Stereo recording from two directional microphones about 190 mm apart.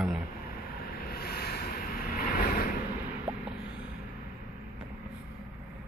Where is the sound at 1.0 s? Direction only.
55° left (ahead or behind).